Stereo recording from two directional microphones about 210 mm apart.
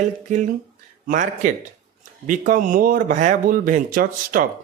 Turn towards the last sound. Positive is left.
turn(degrees=-40)  # may be behind; listen again after turning